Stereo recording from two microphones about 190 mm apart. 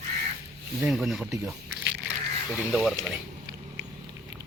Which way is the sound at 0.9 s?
Centre (ahead or behind).